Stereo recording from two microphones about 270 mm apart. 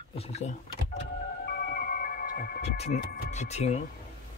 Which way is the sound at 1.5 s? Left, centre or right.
Left.